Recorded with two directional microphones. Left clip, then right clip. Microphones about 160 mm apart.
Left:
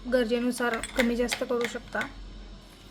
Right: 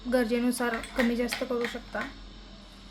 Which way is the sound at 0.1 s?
15° left (ahead or behind).